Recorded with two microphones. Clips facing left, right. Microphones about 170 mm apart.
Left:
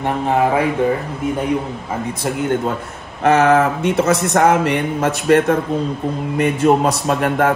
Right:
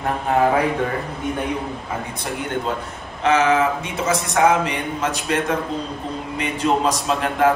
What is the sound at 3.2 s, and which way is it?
Speech, 55° left (ahead or behind).